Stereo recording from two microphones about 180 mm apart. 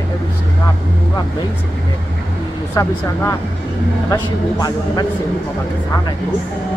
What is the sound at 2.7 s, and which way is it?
A man's voice, 15° left (ahead or behind).